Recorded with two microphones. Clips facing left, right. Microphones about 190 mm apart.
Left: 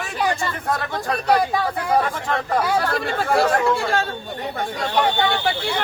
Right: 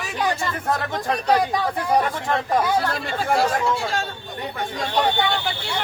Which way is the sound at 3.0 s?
60° left (ahead or behind).